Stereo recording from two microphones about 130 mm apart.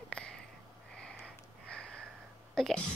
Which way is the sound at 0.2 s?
10° left (ahead or behind).